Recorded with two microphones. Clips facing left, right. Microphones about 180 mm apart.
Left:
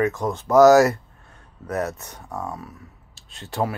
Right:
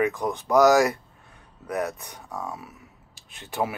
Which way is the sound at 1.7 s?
Centre (ahead or behind).